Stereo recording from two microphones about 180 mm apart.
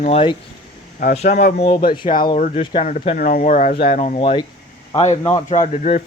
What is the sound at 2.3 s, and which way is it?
Speech, 45° left (ahead or behind).